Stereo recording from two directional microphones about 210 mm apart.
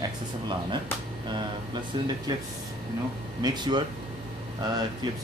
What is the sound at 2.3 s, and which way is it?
Speech, 20° right (ahead or behind).